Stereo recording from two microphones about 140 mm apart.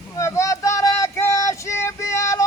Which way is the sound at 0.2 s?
20° left (ahead or behind).